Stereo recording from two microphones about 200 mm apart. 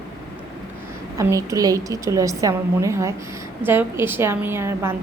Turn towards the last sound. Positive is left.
turn(degrees=-10)  # may be behind; listen again after turning